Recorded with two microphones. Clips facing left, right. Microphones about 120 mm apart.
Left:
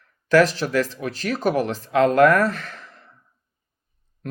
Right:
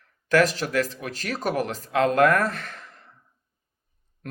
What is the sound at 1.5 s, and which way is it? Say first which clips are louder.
Speech: left 4 dB; 40° right (ahead or behind).